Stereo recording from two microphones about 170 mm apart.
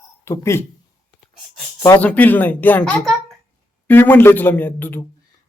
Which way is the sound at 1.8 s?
15° left (ahead or behind).